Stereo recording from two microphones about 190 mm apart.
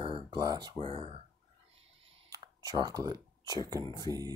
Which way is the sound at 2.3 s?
20° right (ahead or behind).